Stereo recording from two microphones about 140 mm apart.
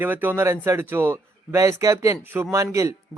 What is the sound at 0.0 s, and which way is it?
Speech, 15° right (ahead or behind).